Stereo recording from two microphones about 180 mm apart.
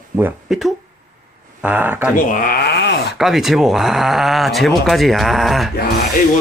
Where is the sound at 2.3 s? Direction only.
50° left (ahead or behind); by 3.1 s 65° left (ahead or behind).